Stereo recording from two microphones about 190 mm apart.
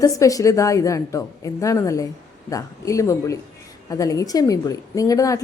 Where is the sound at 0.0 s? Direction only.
15° left (ahead or behind).